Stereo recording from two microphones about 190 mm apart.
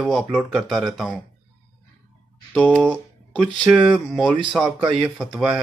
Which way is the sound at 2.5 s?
5° left (ahead or behind).